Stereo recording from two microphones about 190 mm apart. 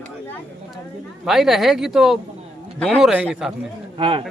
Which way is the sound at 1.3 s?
Centre (ahead or behind).